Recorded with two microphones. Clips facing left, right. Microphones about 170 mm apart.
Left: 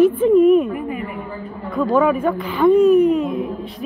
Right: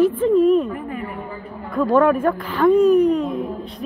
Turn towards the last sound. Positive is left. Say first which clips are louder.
# left 2 dB
turn(degrees=5)  # may be behind; listen again after turning